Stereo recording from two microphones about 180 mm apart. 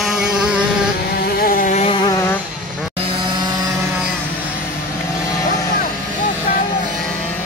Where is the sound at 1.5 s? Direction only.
40° left (ahead or behind).